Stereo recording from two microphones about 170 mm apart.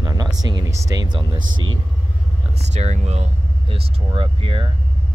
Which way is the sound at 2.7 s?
40° right (ahead or behind).